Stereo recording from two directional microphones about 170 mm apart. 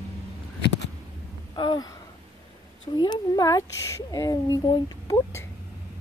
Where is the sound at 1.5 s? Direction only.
25° left (ahead or behind).